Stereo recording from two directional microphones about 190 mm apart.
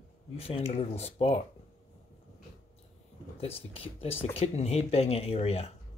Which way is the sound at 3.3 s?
30° left (ahead or behind).